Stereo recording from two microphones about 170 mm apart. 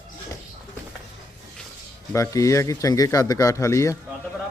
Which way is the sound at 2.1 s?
20° left (ahead or behind).